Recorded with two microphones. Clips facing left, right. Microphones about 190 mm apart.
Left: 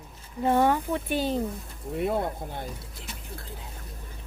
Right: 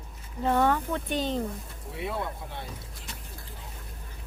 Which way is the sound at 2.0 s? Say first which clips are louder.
Left 6 dB; 50° left (ahead or behind).